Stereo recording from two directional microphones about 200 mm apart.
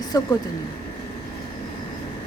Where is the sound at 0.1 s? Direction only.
20° left (ahead or behind).